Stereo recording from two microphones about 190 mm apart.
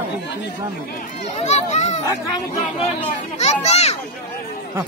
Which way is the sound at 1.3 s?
35° left (ahead or behind).